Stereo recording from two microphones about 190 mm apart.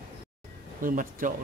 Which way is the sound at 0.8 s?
45° right (ahead or behind).